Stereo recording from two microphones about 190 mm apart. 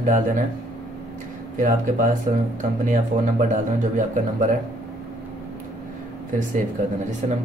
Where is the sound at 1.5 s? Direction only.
40° right (ahead or behind).